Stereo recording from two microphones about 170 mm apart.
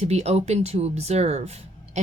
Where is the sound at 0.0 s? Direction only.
40° right (ahead or behind).